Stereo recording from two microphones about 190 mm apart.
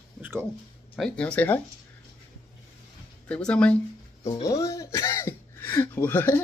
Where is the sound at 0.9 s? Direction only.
5° left (ahead or behind).